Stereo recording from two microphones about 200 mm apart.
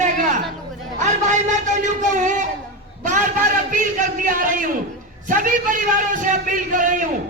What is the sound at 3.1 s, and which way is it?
A man's voice, 40° right (ahead or behind).